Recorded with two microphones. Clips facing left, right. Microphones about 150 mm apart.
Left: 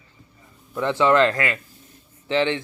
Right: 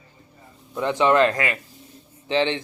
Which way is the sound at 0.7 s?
20° right (ahead or behind).